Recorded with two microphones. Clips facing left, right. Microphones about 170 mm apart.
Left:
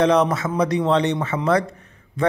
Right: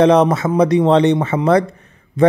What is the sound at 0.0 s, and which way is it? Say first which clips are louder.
A man's voice: right 6 dB; 25° right (ahead or behind).